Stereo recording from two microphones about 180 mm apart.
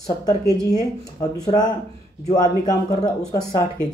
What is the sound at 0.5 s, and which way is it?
Speech, 20° left (ahead or behind).